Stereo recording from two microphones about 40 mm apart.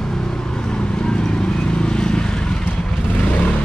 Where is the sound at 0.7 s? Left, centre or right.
Left.